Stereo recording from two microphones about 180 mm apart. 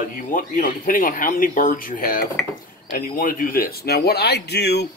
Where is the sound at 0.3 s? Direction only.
50° left (ahead or behind).